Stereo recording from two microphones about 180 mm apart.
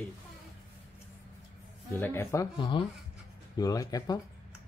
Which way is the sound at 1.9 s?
15° left (ahead or behind).